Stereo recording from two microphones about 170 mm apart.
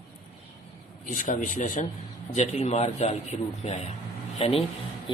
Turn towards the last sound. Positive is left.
turn(degrees=35)  # may be behind; listen again after turning